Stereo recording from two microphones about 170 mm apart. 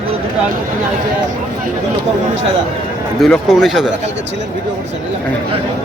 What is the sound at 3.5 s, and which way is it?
Speech, centre (ahead or behind).